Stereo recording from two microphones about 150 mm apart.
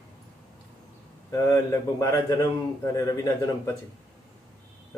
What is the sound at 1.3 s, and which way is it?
A man's voice, 25° left (ahead or behind).